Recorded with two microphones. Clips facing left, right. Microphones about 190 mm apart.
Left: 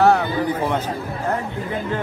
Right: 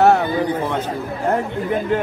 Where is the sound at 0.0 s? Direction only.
20° right (ahead or behind).